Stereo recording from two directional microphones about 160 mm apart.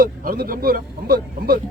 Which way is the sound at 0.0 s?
65° right (ahead or behind).